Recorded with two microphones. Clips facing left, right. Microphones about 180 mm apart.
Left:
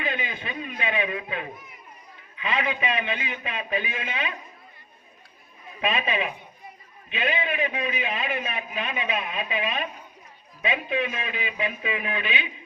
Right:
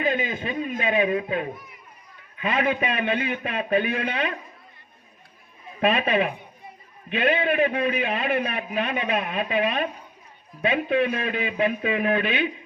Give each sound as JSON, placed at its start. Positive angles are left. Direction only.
{"t": 0.0, "sound": "a man's voice", "side_deg": -45}
{"t": 5.8, "sound": "a man's voice", "side_deg": -55}